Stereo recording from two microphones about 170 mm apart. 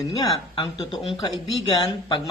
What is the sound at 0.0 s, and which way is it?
Speech, 20° left (ahead or behind).